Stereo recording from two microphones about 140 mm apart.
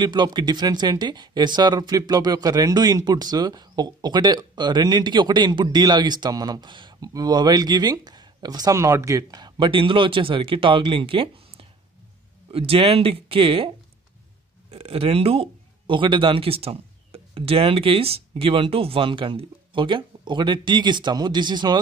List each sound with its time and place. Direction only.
0.0 s speech: 30° right (ahead or behind)
14.7 s speech: 45° right (ahead or behind)